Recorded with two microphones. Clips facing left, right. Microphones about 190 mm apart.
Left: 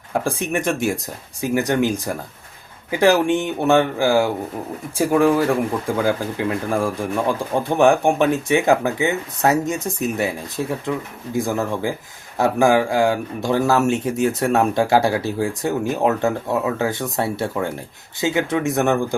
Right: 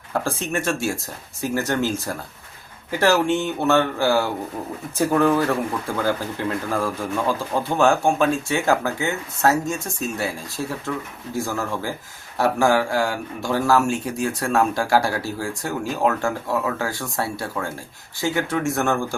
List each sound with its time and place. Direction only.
0.1 s speech: 15° left (ahead or behind)